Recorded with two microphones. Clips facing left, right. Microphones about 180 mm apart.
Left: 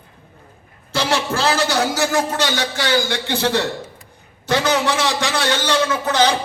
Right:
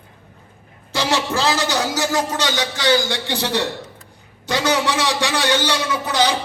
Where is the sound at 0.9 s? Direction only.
15° right (ahead or behind).